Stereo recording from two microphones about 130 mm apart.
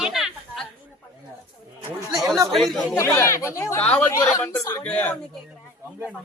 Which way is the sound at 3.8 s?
10° left (ahead or behind).